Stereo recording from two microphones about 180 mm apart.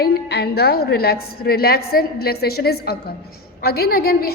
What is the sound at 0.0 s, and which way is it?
A woman's voice, 65° left (ahead or behind).